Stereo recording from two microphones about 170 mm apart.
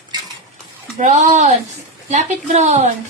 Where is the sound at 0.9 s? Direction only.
45° right (ahead or behind).